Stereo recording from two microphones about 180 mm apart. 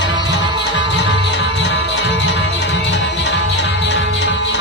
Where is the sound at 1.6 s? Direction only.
80° left.